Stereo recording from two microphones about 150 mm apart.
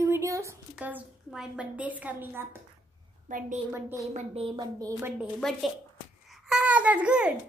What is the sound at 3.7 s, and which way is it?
Speech, 15° right (ahead or behind).